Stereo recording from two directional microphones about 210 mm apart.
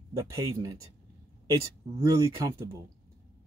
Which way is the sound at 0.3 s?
15° right (ahead or behind).